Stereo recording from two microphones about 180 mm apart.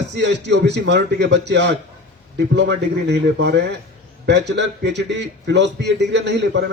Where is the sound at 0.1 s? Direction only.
75° right (ahead or behind).